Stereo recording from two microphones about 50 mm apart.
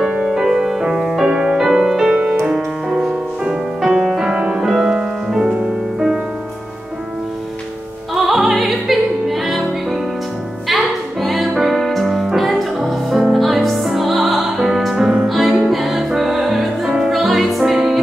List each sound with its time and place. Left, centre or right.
0.2 s music: centre
3.4 s music: centre
8.1 s opera: centre
10.7 s music: centre